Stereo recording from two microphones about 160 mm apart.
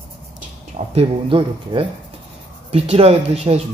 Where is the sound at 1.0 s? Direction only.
35° right (ahead or behind).